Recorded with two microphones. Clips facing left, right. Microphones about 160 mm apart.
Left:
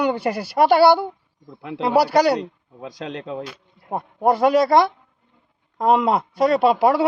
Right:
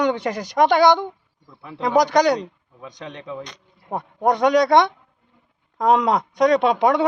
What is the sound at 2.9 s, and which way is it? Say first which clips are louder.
Speech: left 3 dB; 70° left (ahead or behind).